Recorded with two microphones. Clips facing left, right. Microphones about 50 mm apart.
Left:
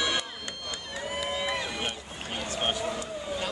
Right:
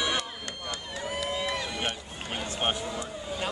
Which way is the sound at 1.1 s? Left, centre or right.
Centre.